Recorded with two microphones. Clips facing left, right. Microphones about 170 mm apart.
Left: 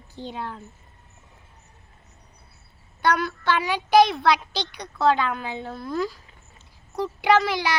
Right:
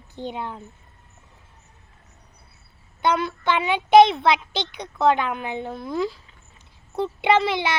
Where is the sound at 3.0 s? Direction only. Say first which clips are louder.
Right 1 dB; 20° right (ahead or behind).